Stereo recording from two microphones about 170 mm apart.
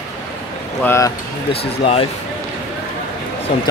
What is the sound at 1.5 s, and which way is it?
Speech, 35° left (ahead or behind).